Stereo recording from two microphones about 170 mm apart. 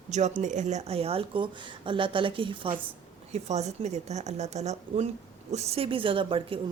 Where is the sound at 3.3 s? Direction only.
40° right (ahead or behind).